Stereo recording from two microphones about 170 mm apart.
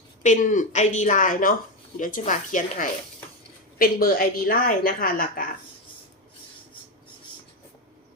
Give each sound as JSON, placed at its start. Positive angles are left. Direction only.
{"t": 0.2, "sound": "a woman's voice", "side_deg": 45}